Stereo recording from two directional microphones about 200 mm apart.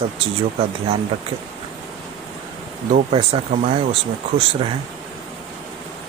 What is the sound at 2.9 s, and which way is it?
Speech, 30° right (ahead or behind).